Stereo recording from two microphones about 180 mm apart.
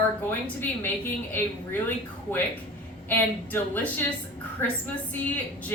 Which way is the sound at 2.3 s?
10° left (ahead or behind).